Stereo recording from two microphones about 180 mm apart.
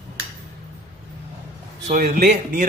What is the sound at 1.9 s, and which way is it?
Speech, 45° right (ahead or behind).